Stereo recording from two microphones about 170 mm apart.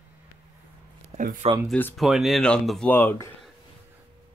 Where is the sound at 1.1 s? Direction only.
50° right (ahead or behind).